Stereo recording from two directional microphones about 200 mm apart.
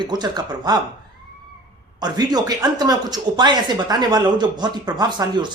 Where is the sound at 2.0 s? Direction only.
20° right (ahead or behind).